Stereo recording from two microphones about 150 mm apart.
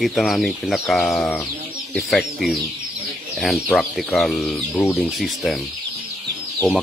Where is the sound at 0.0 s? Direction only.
Centre (ahead or behind).